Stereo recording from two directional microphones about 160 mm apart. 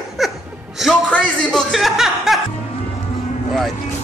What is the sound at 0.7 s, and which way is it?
Speech, centre (ahead or behind).